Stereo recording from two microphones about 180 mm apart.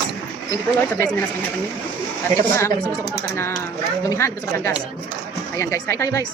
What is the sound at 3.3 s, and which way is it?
Speech, 15° left (ahead or behind).